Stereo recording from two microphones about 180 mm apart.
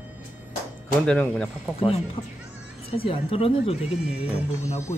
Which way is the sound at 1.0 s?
5° left (ahead or behind).